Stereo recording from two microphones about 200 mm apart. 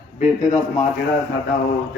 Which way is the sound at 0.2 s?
40° left (ahead or behind).